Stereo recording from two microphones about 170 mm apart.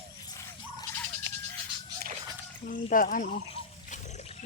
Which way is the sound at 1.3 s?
90° right.